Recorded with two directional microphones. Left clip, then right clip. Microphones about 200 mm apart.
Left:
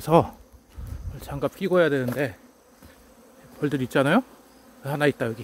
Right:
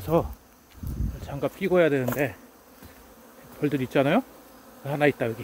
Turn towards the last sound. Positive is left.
turn(degrees=30)  # may be behind; listen again after turning